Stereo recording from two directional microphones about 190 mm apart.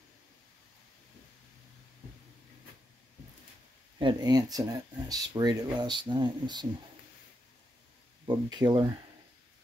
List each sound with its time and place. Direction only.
4.0 s speech: 20° right (ahead or behind)
8.3 s speech: 20° right (ahead or behind)